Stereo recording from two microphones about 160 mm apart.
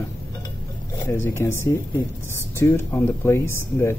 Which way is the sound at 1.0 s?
20° left (ahead or behind).